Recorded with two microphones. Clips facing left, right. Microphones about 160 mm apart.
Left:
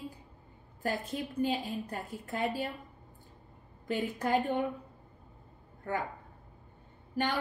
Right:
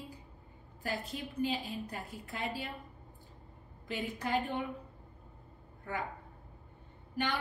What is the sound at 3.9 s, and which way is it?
Speech, 45° left (ahead or behind).